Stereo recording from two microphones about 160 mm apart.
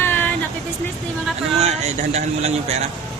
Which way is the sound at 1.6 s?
45° right (ahead or behind).